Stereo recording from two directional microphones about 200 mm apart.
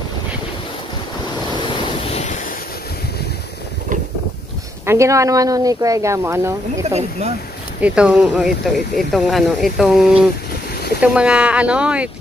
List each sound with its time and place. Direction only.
1.8 s waves: 30° left (ahead or behind)
4.8 s speech: 15° right (ahead or behind)
6.8 s speech: 35° right (ahead or behind)
7.8 s speech: 5° right (ahead or behind)